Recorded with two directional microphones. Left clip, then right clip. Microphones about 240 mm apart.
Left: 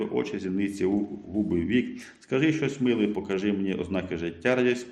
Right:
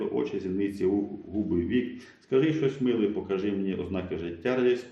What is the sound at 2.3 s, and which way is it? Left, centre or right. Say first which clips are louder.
A man's voice: right 1 dB; left.